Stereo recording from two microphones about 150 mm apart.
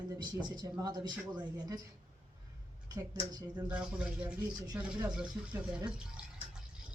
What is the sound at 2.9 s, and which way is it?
Speech, 25° right (ahead or behind).